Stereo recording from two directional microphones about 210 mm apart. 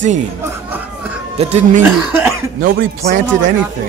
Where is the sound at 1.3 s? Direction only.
30° right (ahead or behind).